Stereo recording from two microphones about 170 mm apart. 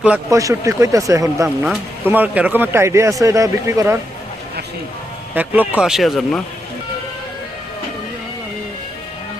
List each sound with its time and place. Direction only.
0.3 s speech: 20° right (ahead or behind)
1.6 s speech: 10° right (ahead or behind)
5.3 s speech: 10° right (ahead or behind)